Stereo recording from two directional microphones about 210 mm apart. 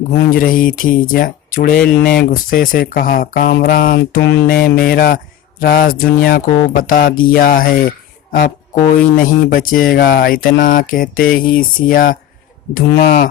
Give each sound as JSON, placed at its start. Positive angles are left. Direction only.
{"t": 0.3, "sound": "speech", "side_deg": 40}
{"t": 1.7, "sound": "speech", "side_deg": 5}
{"t": 2.2, "sound": "speech", "side_deg": 45}